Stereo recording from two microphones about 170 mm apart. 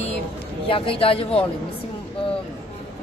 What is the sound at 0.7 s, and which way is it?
Speech, 35° left (ahead or behind).